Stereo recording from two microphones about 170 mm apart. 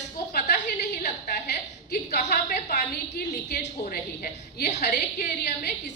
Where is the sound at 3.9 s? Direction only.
65° left (ahead or behind).